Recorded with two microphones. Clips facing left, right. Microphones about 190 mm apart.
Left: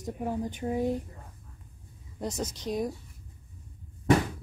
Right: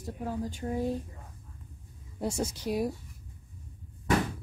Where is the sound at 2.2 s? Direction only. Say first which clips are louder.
Right 2 dB; 10° right (ahead or behind).